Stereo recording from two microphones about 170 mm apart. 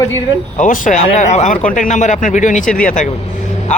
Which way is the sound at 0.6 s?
50° left (ahead or behind).